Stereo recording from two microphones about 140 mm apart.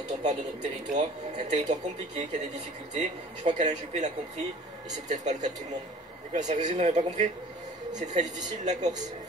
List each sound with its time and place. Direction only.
0.2 s speech: 55° right (ahead or behind)